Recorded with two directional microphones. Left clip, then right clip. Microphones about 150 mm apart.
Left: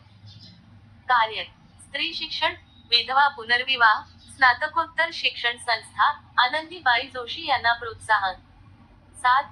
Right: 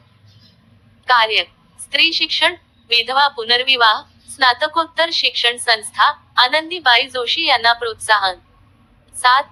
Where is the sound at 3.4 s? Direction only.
45° right (ahead or behind).